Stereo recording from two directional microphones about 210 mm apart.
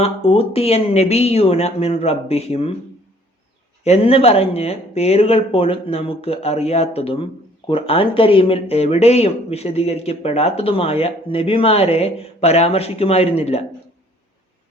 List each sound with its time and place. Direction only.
0.0 s speech: 25° left (ahead or behind)
3.8 s speech: 30° left (ahead or behind)